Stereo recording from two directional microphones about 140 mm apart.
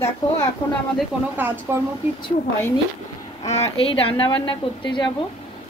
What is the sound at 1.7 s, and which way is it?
Speech, 15° right (ahead or behind).